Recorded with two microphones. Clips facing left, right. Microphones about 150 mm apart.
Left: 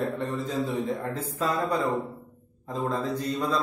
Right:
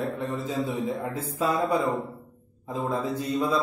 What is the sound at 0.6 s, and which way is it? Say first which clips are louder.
A man's voice: even; 10° right (ahead or behind).